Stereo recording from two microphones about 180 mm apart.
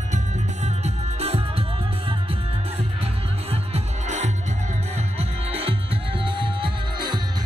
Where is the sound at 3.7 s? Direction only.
40° right (ahead or behind).